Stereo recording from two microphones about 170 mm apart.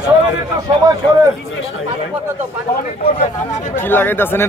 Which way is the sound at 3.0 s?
40° left (ahead or behind).